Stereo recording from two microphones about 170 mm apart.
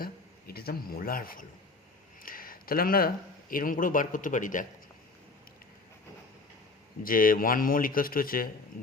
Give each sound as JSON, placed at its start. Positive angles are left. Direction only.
{"t": 0.0, "sound": "a sound", "side_deg": 65}
{"t": 3.5, "sound": "speech", "side_deg": 55}
{"t": 7.0, "sound": "a man's voice", "side_deg": 55}